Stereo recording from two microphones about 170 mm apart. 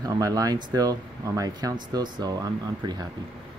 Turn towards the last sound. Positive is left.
turn(degrees=-25)  # may be behind; listen again after turning